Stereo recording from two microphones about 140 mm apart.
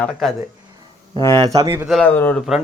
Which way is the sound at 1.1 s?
25° right (ahead or behind).